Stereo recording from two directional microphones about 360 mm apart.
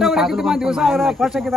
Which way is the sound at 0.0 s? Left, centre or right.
Centre.